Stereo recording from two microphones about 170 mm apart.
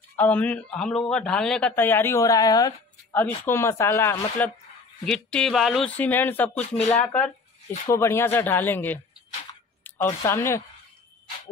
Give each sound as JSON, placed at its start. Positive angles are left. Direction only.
{"t": 0.1, "sound": "speech", "side_deg": 10}
{"t": 5.0, "sound": "speech", "side_deg": 5}
{"t": 10.0, "sound": "speech", "side_deg": 15}